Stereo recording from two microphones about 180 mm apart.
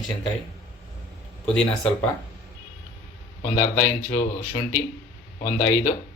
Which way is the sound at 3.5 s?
45° left (ahead or behind).